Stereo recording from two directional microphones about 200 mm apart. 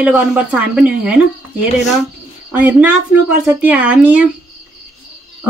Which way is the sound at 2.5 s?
5° right (ahead or behind).